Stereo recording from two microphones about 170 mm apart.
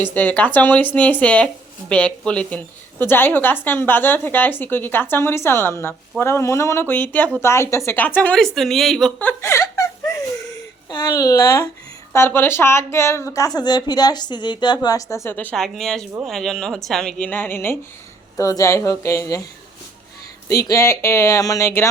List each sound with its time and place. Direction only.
0.0 s a woman's voice: 10° left (ahead or behind)
20.5 s a woman's voice: 20° left (ahead or behind)